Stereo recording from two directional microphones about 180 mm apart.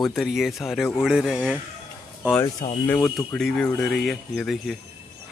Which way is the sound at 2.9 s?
10° left (ahead or behind).